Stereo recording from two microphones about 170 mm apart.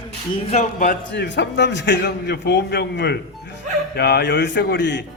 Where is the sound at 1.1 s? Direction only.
90° left.